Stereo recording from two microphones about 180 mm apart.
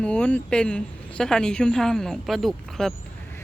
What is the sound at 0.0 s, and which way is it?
Speech, 5° left (ahead or behind).